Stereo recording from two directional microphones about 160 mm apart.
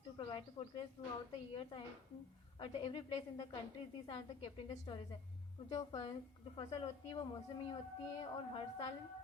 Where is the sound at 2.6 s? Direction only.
35° left (ahead or behind).